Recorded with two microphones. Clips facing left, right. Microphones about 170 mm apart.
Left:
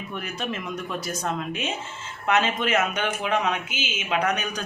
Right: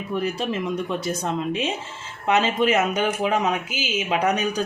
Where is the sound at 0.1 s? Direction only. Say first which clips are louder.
Right 7 dB; 30° right (ahead or behind).